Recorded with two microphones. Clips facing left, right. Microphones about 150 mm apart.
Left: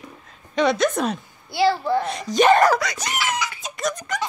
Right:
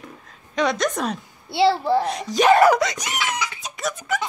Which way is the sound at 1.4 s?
25° right (ahead or behind).